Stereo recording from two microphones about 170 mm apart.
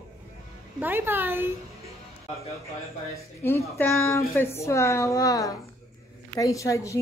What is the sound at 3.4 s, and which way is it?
A woman's voice, 15° left (ahead or behind).